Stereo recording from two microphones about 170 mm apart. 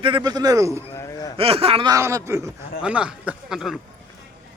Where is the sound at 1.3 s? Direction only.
35° right (ahead or behind).